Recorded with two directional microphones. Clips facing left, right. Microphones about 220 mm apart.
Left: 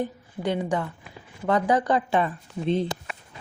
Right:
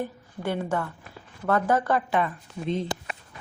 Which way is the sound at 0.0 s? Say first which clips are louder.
Left 3 dB; 15° left (ahead or behind).